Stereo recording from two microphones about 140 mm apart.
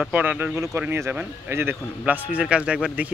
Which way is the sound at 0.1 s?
10° right (ahead or behind).